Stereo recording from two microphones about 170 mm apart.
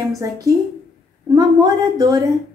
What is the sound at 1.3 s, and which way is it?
Speech, 20° right (ahead or behind).